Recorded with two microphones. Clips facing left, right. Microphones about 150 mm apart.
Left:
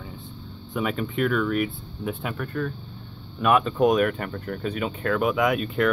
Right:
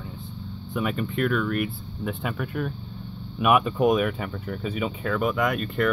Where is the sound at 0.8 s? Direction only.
Centre (ahead or behind).